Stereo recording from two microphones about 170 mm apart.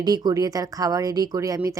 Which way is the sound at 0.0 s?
25° right (ahead or behind).